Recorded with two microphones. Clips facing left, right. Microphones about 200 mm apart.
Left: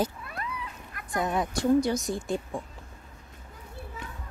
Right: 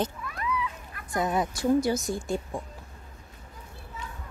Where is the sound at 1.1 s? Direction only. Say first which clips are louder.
Right 1 dB; 5° right (ahead or behind).